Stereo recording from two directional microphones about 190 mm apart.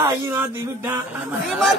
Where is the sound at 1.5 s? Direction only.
Centre (ahead or behind).